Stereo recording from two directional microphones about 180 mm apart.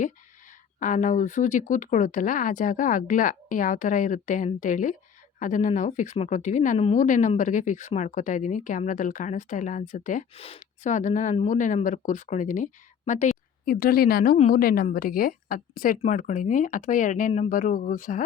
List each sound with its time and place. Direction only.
0.8 s a woman's voice: 45° left (ahead or behind)